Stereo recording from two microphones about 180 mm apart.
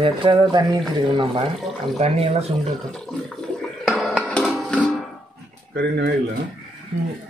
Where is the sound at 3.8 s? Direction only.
Centre (ahead or behind).